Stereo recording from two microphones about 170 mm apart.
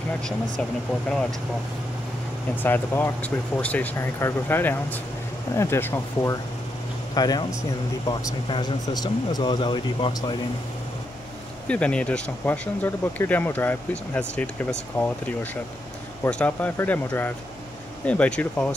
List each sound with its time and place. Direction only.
2.6 s speech: 10° left (ahead or behind); by 10.3 s 25° left (ahead or behind)
11.6 s speech: 5° left (ahead or behind)